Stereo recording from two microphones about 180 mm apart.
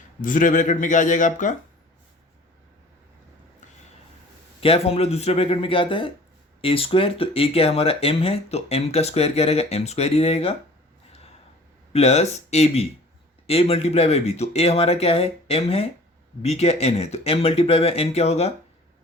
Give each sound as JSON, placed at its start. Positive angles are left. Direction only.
{"t": 0.2, "sound": "speech", "side_deg": 45}
{"t": 4.6, "sound": "speech", "side_deg": 30}
{"t": 11.9, "sound": "speech", "side_deg": 35}